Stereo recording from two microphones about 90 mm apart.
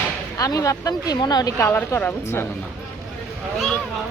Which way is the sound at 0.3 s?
40° left (ahead or behind).